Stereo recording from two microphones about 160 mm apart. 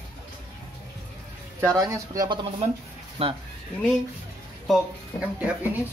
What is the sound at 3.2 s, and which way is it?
Speech, 35° right (ahead or behind).